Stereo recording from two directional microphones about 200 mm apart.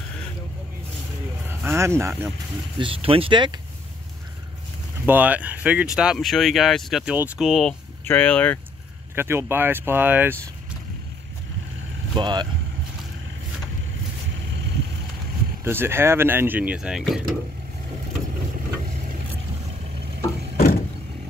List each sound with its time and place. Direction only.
1.5 s speech: 10° right (ahead or behind)
2.8 s speech: 25° right (ahead or behind)
5.0 s speech: 10° right (ahead or behind); by 8.5 s 10° left (ahead or behind)
9.1 s speech: 10° right (ahead or behind)
12.2 s speech: 20° right (ahead or behind)
15.6 s speech: 10° right (ahead or behind)
20.5 s vehicle: 45° left (ahead or behind)